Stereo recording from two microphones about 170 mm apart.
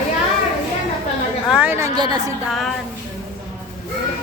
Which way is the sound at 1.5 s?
10° right (ahead or behind).